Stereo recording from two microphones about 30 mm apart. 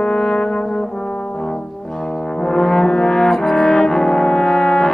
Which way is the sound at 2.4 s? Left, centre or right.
Left.